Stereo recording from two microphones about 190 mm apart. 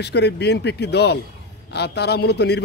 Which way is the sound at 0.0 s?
60° left (ahead or behind).